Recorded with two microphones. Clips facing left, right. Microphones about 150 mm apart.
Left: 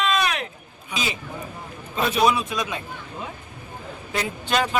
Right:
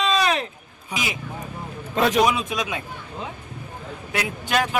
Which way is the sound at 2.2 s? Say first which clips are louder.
Left 1 dB; 15° right (ahead or behind).